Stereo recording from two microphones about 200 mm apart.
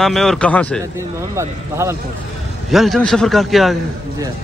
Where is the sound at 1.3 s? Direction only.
15° right (ahead or behind).